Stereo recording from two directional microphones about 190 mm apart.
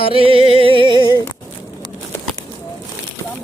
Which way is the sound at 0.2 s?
30° right (ahead or behind).